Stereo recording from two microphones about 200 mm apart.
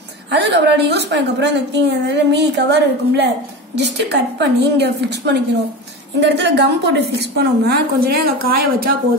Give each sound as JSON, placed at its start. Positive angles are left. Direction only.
{"t": 0.3, "sound": "a woman's voice", "side_deg": -60}